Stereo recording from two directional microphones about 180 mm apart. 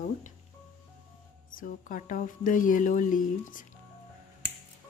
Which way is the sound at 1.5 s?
50° left (ahead or behind).